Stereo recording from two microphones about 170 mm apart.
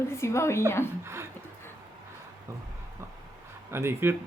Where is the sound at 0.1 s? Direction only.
15° left (ahead or behind).